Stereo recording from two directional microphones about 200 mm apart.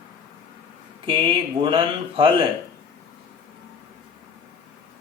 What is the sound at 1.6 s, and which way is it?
Speech, 25° right (ahead or behind).